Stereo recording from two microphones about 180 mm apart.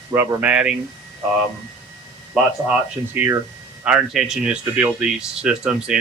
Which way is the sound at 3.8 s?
5° right (ahead or behind).